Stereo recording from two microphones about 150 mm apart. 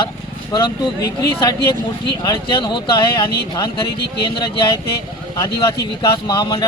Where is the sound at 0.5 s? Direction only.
25° left (ahead or behind).